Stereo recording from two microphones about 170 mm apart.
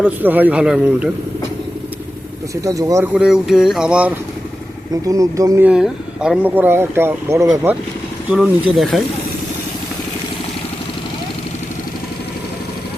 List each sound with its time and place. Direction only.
0.0 s speech: 10° right (ahead or behind)
2.6 s speech: 20° right (ahead or behind)
3.1 s a sound: 5° right (ahead or behind)
5.0 s speech: 20° right (ahead or behind)
5.6 s speech: 5° right (ahead or behind)
8.3 s a sound: centre (ahead or behind)